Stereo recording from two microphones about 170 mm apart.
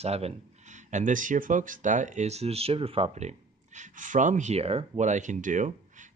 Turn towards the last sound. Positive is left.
turn(degrees=-45)  # may be behind; listen again after turning